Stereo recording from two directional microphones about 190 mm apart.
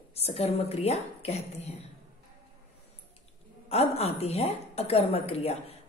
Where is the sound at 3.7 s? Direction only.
30° left (ahead or behind).